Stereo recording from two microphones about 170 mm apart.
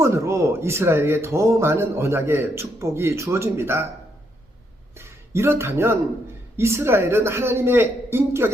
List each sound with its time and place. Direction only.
0.0 s speech: 15° right (ahead or behind)
4.9 s speech: 15° right (ahead or behind)